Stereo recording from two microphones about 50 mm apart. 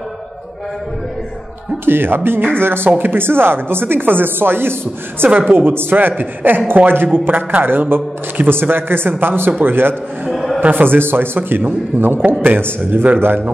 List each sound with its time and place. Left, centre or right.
1.9 s a man's voice: right
10.3 s a sound: centre
10.6 s a man's voice: right